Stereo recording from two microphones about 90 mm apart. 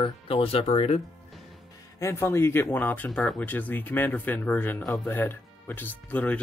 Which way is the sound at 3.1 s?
10° left (ahead or behind).